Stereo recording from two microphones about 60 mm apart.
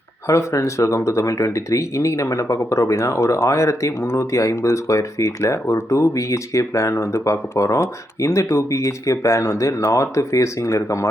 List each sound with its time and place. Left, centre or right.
0.3 s speech: left